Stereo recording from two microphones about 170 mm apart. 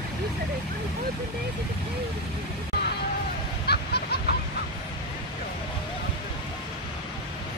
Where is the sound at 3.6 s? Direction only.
70° left (ahead or behind).